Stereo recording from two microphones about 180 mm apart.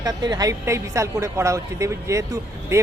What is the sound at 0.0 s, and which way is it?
A woman's voice, 20° right (ahead or behind).